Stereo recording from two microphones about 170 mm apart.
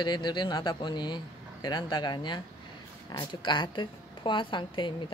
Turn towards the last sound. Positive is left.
turn(degrees=30)  # may be behind; listen again after turning